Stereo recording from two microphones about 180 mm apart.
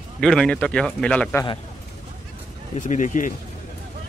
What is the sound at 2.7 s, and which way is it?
Speech, 45° left (ahead or behind).